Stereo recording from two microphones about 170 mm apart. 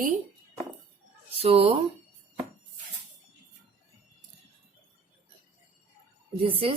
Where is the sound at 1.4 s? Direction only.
35° right (ahead or behind).